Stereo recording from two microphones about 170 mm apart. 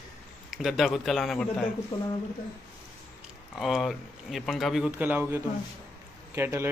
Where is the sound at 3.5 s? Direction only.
Centre (ahead or behind).